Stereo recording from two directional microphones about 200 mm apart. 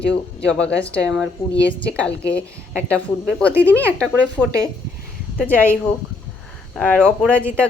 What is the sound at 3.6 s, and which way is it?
Speech, 10° left (ahead or behind).